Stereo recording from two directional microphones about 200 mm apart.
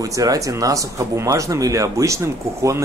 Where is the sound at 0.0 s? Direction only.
15° right (ahead or behind).